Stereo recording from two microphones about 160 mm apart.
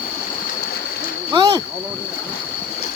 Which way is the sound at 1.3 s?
25° right (ahead or behind).